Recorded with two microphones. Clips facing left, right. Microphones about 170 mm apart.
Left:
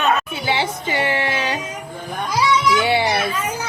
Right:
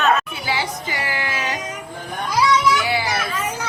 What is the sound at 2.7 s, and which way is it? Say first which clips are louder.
Children playing: left 4 dB; 25° left (ahead or behind).